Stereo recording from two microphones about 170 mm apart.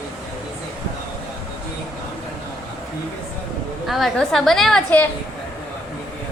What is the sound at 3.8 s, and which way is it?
A woman's voice, centre (ahead or behind).